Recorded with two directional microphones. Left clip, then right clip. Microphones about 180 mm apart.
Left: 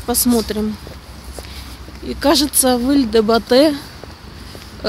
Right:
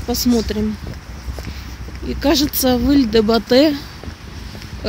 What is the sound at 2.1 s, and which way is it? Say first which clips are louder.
Speech: left 2 dB; 10° left (ahead or behind).